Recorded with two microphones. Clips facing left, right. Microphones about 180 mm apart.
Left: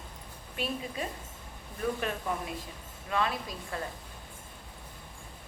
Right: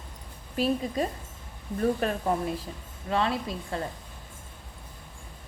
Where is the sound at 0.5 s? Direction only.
35° right (ahead or behind).